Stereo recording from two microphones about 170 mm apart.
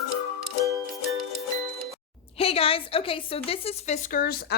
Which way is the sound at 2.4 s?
35° left (ahead or behind).